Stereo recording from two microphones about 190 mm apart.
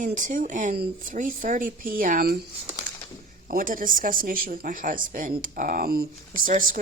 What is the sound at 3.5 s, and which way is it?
Speech, 45° right (ahead or behind).